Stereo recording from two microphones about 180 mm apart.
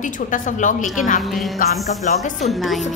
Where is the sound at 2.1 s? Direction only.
45° left (ahead or behind).